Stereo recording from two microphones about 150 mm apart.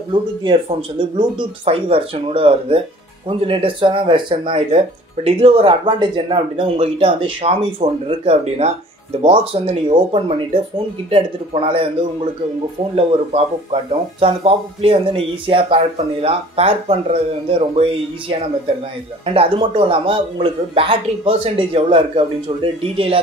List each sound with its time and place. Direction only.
0.1 s speech: 35° right (ahead or behind)
19.2 s speech: 40° right (ahead or behind)